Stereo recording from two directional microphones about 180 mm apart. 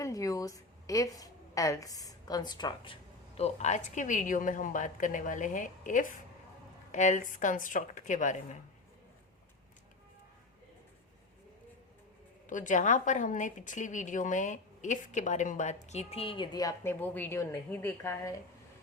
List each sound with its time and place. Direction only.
0.0 s a woman's voice: 20° left (ahead or behind); by 8.5 s 45° left (ahead or behind)
12.5 s a woman's voice: 45° left (ahead or behind); by 18.3 s 15° left (ahead or behind)